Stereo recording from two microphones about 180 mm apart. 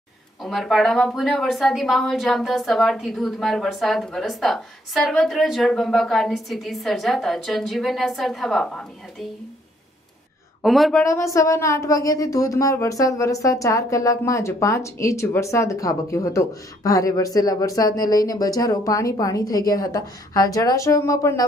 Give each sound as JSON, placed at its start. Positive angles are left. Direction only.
{"t": 0.4, "sound": "a woman's voice", "side_deg": 0}
{"t": 10.6, "sound": "a woman's voice", "side_deg": 0}
{"t": 11.0, "sound": "speech", "side_deg": 15}